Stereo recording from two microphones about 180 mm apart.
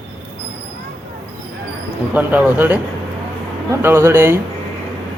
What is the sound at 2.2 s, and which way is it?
Speech, 10° right (ahead or behind).